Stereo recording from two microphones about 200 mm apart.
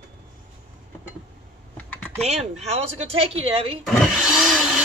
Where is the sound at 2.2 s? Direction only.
30° right (ahead or behind).